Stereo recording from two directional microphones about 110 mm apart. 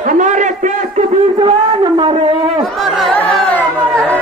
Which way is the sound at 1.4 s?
45° right (ahead or behind).